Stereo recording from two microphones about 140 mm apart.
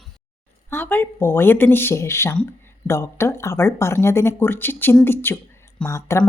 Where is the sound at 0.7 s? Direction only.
15° left (ahead or behind).